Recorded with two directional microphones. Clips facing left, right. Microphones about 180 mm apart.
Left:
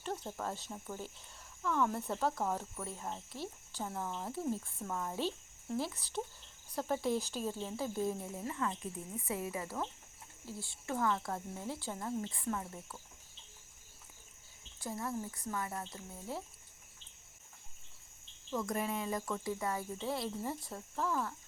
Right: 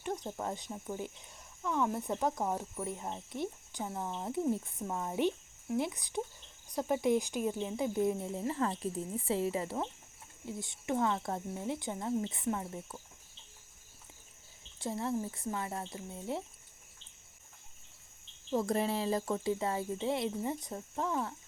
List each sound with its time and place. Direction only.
0.0 s speech: 15° right (ahead or behind)
14.8 s speech: 25° right (ahead or behind)
18.5 s speech: 30° right (ahead or behind)